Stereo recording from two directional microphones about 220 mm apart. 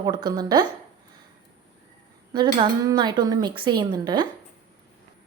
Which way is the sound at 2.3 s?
20° right (ahead or behind).